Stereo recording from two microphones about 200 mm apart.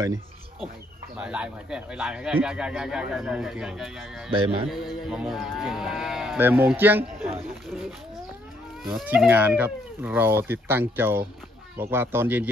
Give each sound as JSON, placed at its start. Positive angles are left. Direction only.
{"t": 0.0, "sound": "a sound", "side_deg": -20}
{"t": 1.1, "sound": "speech", "side_deg": -5}
{"t": 8.9, "sound": "speech", "side_deg": -5}